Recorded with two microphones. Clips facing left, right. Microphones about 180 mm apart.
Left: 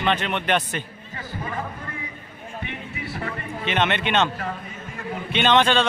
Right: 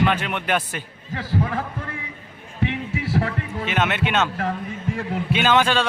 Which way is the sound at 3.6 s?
5° right (ahead or behind).